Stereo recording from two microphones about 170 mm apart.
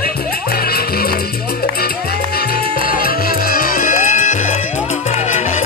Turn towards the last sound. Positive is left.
turn(degrees=45)  # may be behind; listen again after turning